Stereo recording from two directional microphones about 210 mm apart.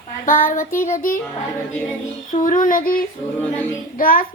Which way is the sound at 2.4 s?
40° left (ahead or behind).